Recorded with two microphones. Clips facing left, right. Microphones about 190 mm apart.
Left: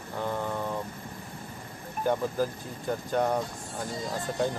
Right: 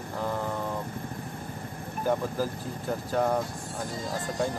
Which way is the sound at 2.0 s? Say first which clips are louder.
Left 1 dB; 5° right (ahead or behind).